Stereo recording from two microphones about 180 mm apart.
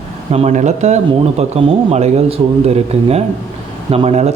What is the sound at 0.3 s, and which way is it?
Speech, 40° right (ahead or behind).